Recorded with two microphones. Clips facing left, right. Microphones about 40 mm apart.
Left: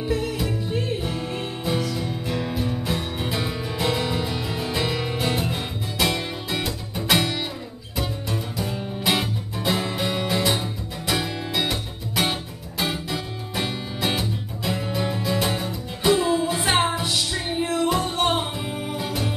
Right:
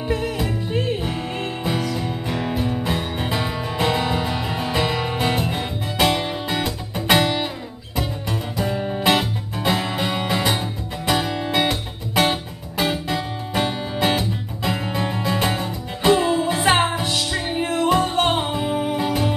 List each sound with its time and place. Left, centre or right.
0.1 s music: right
7.9 s music: centre
14.0 s music: centre
14.7 s music: right